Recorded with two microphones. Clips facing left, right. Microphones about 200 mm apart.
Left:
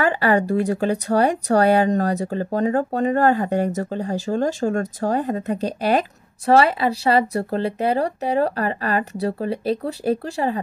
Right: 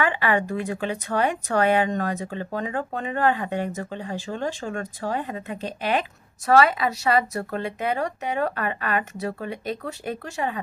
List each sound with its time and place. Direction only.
0.0 s speech: 40° left (ahead or behind)